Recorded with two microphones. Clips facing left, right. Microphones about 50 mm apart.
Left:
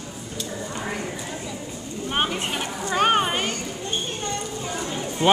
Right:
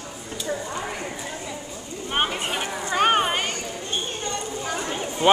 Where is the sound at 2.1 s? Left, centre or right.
Centre.